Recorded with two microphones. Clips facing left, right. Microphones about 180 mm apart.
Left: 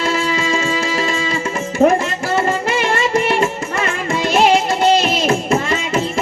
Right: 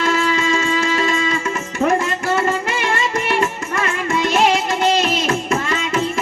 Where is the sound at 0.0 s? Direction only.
30° left (ahead or behind).